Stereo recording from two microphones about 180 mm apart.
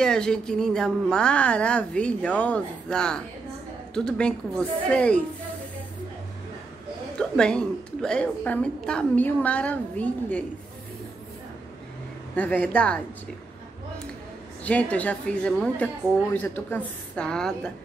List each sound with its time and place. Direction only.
0.0 s a woman's voice: 5° left (ahead or behind)
7.2 s a woman's voice: 5° left (ahead or behind)
12.4 s a woman's voice: 5° left (ahead or behind)
14.6 s a woman's voice: 5° left (ahead or behind)